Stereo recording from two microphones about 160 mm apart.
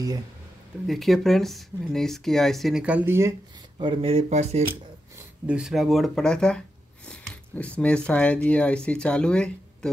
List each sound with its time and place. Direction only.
0.8 s speech: centre (ahead or behind); by 3.3 s 15° right (ahead or behind)
3.7 s speech: 35° right (ahead or behind)
5.5 s speech: 5° right (ahead or behind)